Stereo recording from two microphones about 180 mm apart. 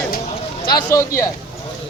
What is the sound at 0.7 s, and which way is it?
Speech, 15° left (ahead or behind).